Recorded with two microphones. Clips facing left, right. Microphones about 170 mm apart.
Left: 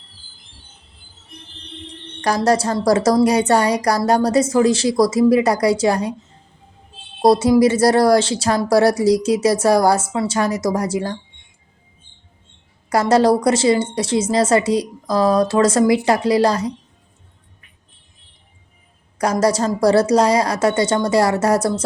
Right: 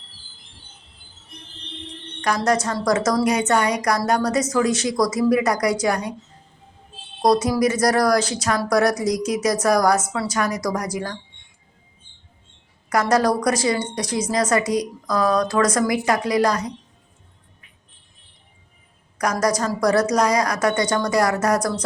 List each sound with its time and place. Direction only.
2.2 s a woman's voice: 35° left (ahead or behind)
7.2 s a woman's voice: 30° left (ahead or behind)
12.9 s a woman's voice: 30° left (ahead or behind)
19.2 s a woman's voice: 30° left (ahead or behind)